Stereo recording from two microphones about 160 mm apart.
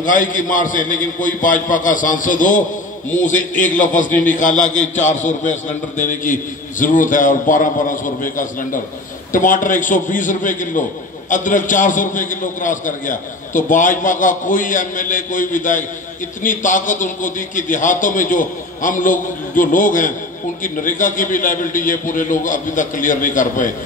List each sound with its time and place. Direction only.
0.0 s a man's voice: 55° left (ahead or behind)